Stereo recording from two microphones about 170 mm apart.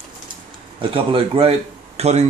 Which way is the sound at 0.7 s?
30° right (ahead or behind).